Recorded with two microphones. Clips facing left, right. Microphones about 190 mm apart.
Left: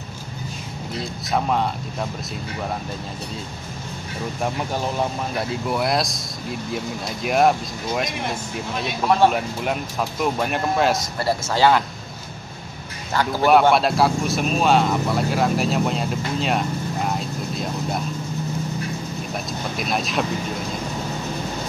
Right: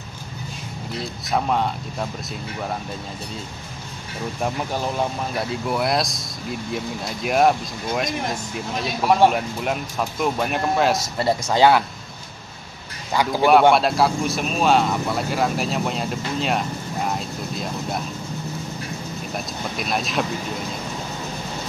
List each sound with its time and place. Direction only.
0.9 s speech: centre (ahead or behind)
4.4 s speech: centre (ahead or behind)
7.2 s speech: centre (ahead or behind)
11.1 s speech: 20° right (ahead or behind)
13.1 s speech: 15° right (ahead or behind)
13.5 s speech: centre (ahead or behind)
19.3 s speech: centre (ahead or behind)